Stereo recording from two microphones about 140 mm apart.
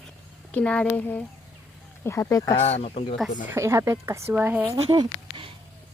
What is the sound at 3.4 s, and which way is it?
Speech, 20° right (ahead or behind).